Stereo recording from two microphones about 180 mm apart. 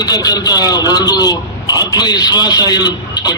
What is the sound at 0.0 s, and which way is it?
A man's voice, 20° left (ahead or behind).